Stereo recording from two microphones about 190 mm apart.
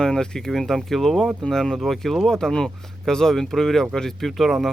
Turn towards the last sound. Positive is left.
turn(degrees=0)  # may be behind; listen again after turning